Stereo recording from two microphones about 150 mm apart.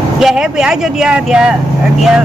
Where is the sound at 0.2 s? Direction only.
5° right (ahead or behind).